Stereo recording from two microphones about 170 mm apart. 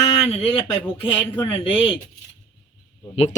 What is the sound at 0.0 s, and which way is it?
Speech, 35° left (ahead or behind).